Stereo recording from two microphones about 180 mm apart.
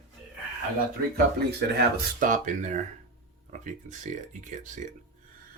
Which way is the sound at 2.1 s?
45° right (ahead or behind).